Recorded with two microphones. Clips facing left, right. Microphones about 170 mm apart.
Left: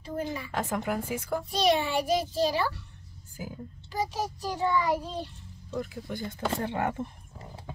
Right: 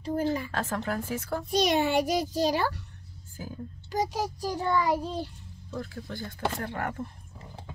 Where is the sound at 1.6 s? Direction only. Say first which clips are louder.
Right 1 dB; 45° right (ahead or behind).